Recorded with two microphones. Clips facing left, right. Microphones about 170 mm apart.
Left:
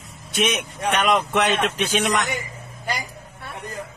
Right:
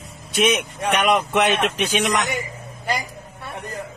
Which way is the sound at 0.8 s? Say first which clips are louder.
Right 1 dB; 15° right (ahead or behind).